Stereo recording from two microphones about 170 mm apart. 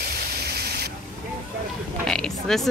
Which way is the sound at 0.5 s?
65° right (ahead or behind).